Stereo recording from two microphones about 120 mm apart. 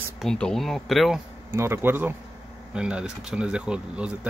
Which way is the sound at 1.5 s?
20° right (ahead or behind).